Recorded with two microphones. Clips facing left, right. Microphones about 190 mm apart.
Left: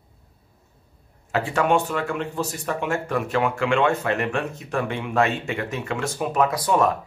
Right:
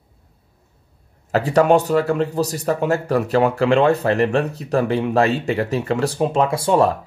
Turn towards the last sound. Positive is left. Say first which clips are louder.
# right 4 dB
turn(degrees=-30)  # may be behind; listen again after turning